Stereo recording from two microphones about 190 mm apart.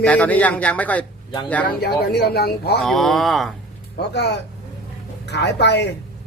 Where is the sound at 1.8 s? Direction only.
55° left (ahead or behind).